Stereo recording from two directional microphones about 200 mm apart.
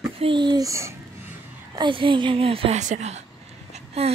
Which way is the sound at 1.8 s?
25° right (ahead or behind).